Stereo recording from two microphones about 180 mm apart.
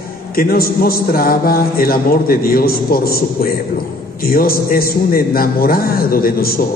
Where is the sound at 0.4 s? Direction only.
55° left (ahead or behind).